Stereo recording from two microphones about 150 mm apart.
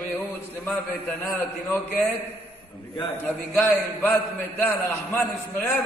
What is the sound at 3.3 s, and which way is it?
A man's voice, 15° left (ahead or behind).